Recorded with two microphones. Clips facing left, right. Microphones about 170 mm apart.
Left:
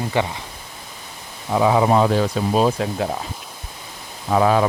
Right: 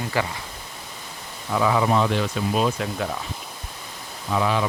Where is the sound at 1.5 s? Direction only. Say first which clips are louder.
Left 4 dB; 25° left (ahead or behind).